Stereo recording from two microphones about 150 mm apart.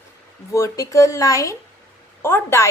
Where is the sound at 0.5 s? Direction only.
20° left (ahead or behind).